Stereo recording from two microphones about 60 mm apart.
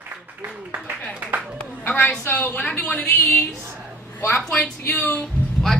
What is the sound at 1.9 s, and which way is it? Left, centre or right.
A woman's voice, left.